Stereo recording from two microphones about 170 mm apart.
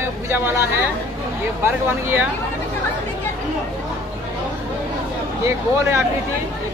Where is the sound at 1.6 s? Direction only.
15° right (ahead or behind).